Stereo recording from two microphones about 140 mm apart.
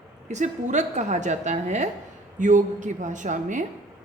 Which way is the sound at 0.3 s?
60° right (ahead or behind).